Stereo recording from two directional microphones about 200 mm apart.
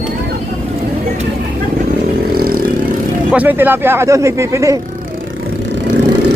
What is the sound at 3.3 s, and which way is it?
Speech, 10° right (ahead or behind).